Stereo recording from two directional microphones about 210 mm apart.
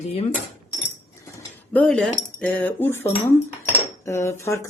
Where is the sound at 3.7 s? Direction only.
15° left (ahead or behind).